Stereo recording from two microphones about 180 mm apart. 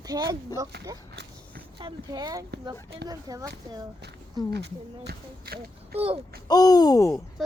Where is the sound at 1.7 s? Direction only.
25° right (ahead or behind).